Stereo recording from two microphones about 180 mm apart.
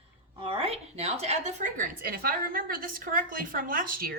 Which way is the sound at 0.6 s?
35° right (ahead or behind).